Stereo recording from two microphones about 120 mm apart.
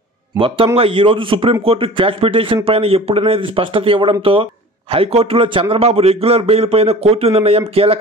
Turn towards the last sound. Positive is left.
turn(degrees=-55)  # may be behind; listen again after turning